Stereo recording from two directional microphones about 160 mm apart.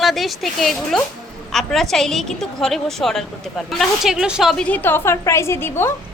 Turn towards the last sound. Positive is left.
turn(degrees=15)  # may be behind; listen again after turning